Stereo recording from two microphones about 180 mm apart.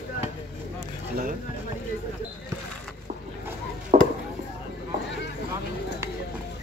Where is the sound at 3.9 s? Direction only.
40° right (ahead or behind).